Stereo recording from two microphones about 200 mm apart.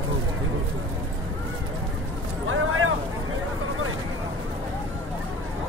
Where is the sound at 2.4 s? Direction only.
90° right.